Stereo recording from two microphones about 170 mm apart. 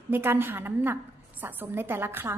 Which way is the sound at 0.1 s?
15° right (ahead or behind).